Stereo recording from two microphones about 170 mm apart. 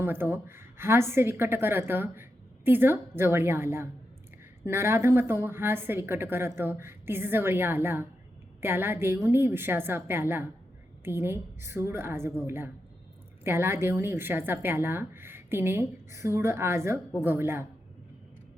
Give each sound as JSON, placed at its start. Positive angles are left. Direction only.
{"t": 0.0, "sound": "a woman's voice", "side_deg": -15}